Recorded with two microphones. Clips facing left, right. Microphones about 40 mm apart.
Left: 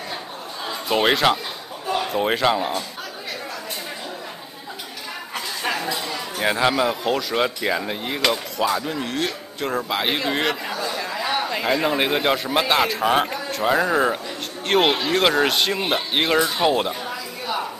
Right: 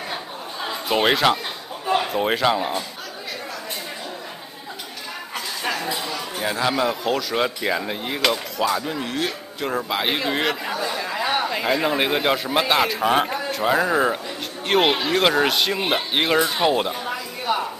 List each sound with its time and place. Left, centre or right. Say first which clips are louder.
0.1 s chatter: right 1 dB; centre
0.8 s speech: even; centre
5.3 s a sound: left 1 dB; centre
6.4 s a man's voice: left 4 dB; left
6.7 s speech: left 1 dB; centre
11.1 s a sound: right 2 dB; centre
11.4 s speech: even; centre
17.5 s a woman's voice: right 3 dB; right